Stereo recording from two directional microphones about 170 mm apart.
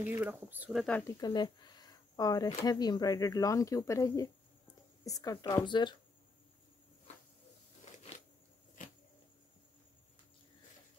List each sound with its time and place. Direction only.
0.1 s speech: 10° right (ahead or behind)
0.9 s speech: 15° left (ahead or behind)